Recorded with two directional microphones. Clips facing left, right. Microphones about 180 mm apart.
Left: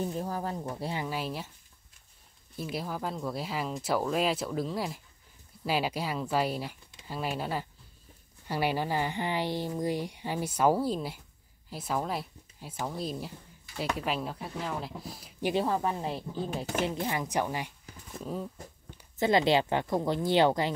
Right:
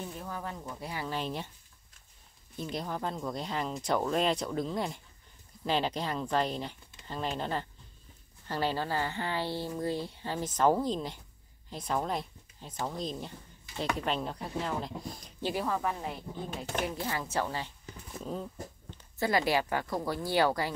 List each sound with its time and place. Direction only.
0.0 s speech: 35° left (ahead or behind)
1.0 s speech: 5° left (ahead or behind)
2.5 s speech: 5° left (ahead or behind)
15.4 s speech: 25° left (ahead or behind)
18.1 s speech: 5° left (ahead or behind)
19.1 s speech: 20° left (ahead or behind)